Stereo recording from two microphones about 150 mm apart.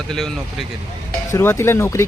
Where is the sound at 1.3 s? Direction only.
20° left (ahead or behind).